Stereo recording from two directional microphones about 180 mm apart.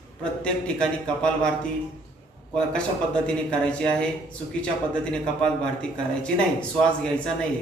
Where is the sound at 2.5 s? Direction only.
5° left (ahead or behind).